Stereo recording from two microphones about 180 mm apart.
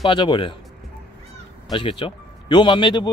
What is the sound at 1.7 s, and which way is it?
Speech, 30° left (ahead or behind).